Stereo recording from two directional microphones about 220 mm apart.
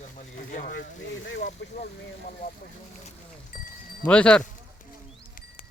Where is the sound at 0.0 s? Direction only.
35° left (ahead or behind).